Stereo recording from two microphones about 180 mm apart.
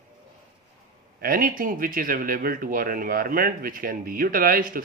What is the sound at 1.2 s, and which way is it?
Speech, 55° right (ahead or behind).